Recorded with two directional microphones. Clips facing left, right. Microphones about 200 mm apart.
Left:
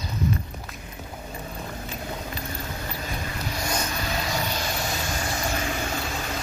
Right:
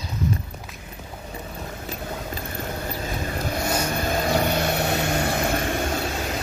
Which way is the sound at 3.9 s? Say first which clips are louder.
Right 6 dB; 50° right (ahead or behind).